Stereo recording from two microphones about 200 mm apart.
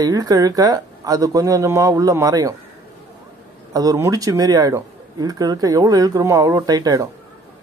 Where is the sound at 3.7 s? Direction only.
15° right (ahead or behind).